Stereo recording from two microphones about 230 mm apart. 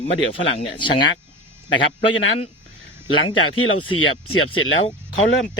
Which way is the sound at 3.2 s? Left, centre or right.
Left.